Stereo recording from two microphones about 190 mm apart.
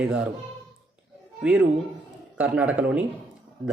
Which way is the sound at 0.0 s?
5° right (ahead or behind).